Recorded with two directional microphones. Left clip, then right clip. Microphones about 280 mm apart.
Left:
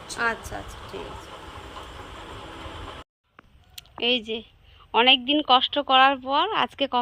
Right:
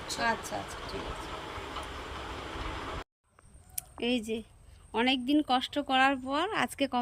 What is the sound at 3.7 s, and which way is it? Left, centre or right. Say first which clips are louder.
Speech: left 8 dB; centre.